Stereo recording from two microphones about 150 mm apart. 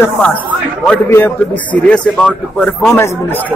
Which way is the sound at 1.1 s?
15° left (ahead or behind).